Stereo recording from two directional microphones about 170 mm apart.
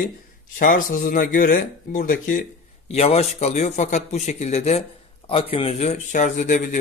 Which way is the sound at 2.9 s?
40° left (ahead or behind).